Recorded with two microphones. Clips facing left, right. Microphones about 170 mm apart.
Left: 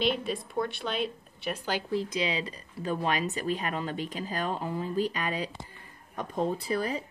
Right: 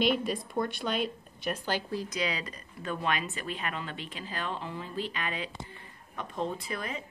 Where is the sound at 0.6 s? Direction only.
5° left (ahead or behind).